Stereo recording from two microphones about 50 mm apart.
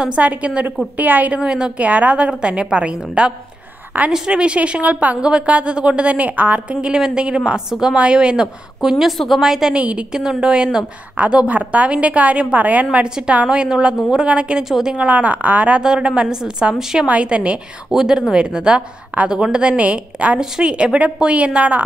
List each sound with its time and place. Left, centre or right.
0.2 s a woman's voice: right
1.4 s a woman's voice: centre
1.8 s a woman's voice: right
6.7 s a woman's voice: centre
9.8 s a woman's voice: right
14.6 s a woman's voice: centre
15.0 s a woman's voice: right
15.8 s a woman's voice: centre
17.8 s a woman's voice: centre
19.8 s a woman's voice: right
20.3 s a woman's voice: centre